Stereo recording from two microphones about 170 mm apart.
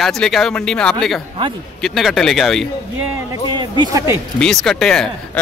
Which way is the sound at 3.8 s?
20° right (ahead or behind).